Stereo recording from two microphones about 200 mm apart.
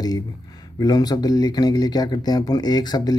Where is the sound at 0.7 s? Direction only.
20° left (ahead or behind).